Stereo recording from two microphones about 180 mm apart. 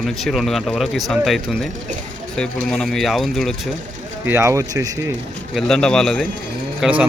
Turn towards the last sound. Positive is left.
turn(degrees=-5)  # may be behind; listen again after turning